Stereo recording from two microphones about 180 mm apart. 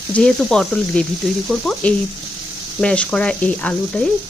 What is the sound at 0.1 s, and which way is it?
Speech, 5° left (ahead or behind).